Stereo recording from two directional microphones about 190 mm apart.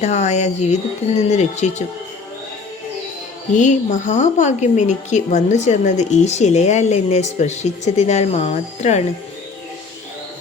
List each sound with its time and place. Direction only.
0.0 s speech: 35° left (ahead or behind)
3.5 s speech: 40° left (ahead or behind)